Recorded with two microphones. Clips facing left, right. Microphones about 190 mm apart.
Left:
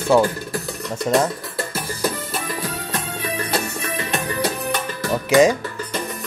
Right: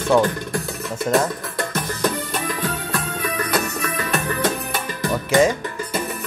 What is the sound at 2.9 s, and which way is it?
Music, 30° left (ahead or behind).